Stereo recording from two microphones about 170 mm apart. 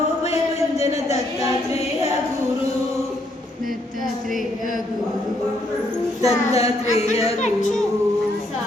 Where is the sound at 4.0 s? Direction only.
Centre (ahead or behind).